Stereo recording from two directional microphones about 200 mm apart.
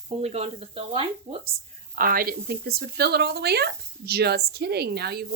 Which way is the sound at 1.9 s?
45° right (ahead or behind).